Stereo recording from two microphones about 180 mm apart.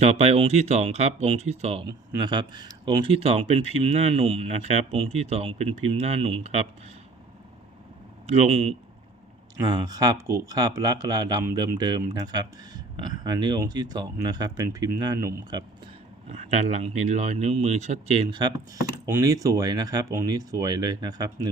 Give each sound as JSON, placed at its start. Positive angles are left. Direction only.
{"t": 0.0, "sound": "speech", "side_deg": -35}
{"t": 1.9, "sound": "speech", "side_deg": -25}
{"t": 8.3, "sound": "speech", "side_deg": -35}
{"t": 9.6, "sound": "speech", "side_deg": -20}
{"t": 16.3, "sound": "speech", "side_deg": -35}